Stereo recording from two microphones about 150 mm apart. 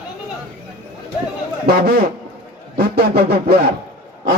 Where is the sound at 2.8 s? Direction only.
90° right.